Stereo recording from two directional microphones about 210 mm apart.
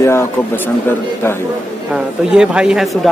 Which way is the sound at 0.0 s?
10° left (ahead or behind).